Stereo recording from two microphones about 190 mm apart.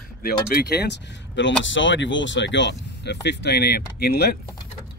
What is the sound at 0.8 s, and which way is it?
Speech, 70° left (ahead or behind).